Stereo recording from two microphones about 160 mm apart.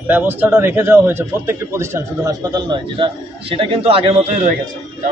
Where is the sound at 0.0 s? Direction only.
10° right (ahead or behind); by 4.6 s 45° right (ahead or behind).